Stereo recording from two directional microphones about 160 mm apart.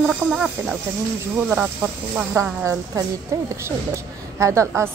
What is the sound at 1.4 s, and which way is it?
A woman's voice, 10° right (ahead or behind).